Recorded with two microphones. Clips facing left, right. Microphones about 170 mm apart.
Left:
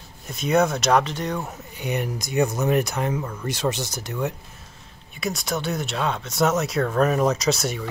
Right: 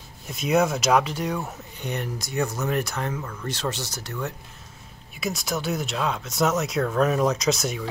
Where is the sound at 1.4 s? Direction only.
10° left (ahead or behind).